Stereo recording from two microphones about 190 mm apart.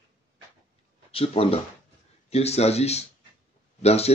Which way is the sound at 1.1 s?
30° left (ahead or behind).